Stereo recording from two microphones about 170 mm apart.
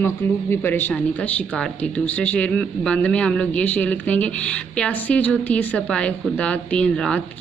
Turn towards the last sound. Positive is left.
turn(degrees=5)  # may be behind; listen again after turning